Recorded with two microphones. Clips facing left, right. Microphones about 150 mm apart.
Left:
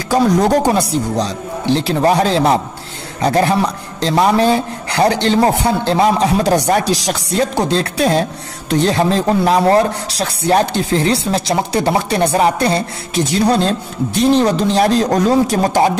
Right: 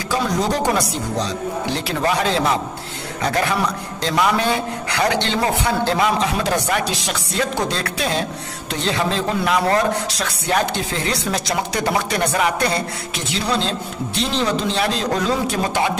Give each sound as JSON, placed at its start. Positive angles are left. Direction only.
{"t": 0.7, "sound": "speech", "side_deg": 30}